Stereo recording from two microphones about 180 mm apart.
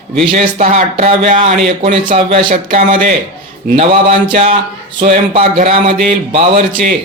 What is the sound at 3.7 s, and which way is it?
A man's voice, 35° right (ahead or behind).